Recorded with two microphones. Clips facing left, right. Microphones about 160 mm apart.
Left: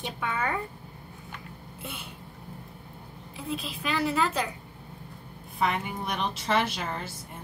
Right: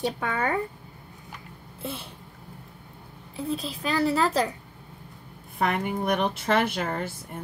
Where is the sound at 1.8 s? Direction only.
30° right (ahead or behind).